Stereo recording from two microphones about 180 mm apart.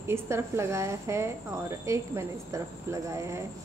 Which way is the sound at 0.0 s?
15° right (ahead or behind).